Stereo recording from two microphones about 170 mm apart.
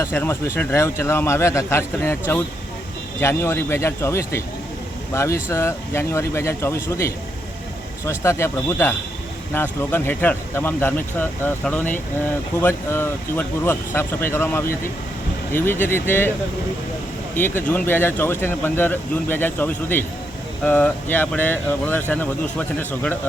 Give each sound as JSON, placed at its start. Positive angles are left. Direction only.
{"t": 0.0, "sound": "speech", "side_deg": 15}
{"t": 17.3, "sound": "speech", "side_deg": 10}